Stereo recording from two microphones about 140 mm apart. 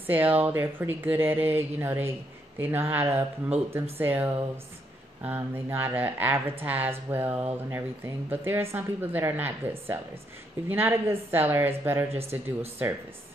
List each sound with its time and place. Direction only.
0.0 s speech: 15° right (ahead or behind)